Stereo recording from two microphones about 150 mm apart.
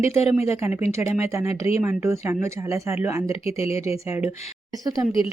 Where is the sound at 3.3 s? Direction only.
40° left (ahead or behind).